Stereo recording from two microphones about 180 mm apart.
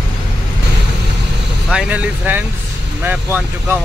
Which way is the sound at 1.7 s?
5° right (ahead or behind).